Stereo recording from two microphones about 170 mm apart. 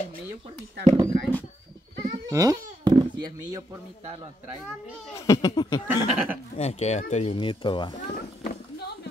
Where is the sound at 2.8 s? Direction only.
25° right (ahead or behind).